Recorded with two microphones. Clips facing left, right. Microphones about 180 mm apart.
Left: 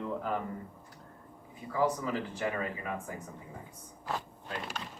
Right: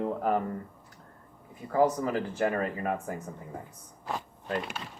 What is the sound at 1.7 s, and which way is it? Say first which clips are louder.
Speech: right 5 dB; 45° right (ahead or behind).